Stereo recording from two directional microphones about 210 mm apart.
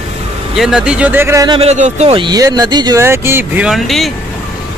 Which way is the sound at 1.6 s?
30° right (ahead or behind).